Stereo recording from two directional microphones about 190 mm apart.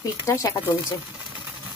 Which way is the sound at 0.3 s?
15° left (ahead or behind).